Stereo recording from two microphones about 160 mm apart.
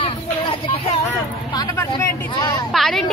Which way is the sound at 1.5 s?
20° left (ahead or behind).